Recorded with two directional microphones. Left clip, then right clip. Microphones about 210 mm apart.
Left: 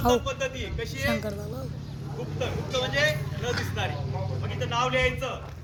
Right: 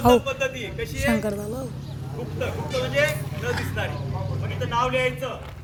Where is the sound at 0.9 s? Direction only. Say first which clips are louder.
Right 5 dB; 30° right (ahead or behind).